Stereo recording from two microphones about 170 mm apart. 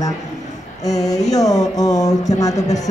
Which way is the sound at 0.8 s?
20° left (ahead or behind).